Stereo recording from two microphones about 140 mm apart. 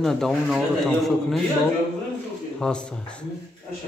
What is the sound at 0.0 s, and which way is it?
Speech, 5° left (ahead or behind).